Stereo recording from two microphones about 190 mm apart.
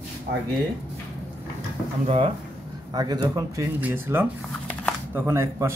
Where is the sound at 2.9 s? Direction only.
20° right (ahead or behind).